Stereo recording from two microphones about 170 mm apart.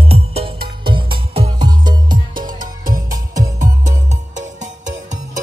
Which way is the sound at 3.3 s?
20° right (ahead or behind).